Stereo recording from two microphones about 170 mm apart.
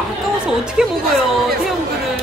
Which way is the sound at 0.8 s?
5° right (ahead or behind).